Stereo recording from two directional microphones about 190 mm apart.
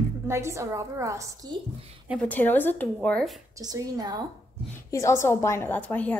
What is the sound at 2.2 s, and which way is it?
A woman's voice, 10° left (ahead or behind).